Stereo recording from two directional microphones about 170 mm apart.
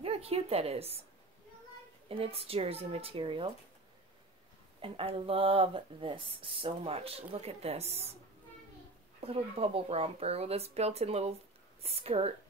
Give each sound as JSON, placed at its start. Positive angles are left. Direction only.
{"t": 0.0, "sound": "a woman's voice", "side_deg": -35}
{"t": 2.0, "sound": "speech", "side_deg": -35}
{"t": 4.8, "sound": "speech", "side_deg": -30}
{"t": 9.2, "sound": "speech", "side_deg": -35}